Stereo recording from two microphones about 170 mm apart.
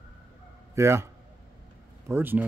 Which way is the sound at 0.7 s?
15° right (ahead or behind).